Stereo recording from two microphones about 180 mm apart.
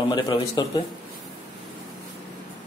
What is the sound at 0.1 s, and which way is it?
Speech, 25° left (ahead or behind).